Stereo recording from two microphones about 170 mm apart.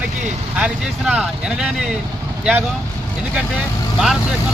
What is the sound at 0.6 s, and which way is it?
Speech, 5° right (ahead or behind).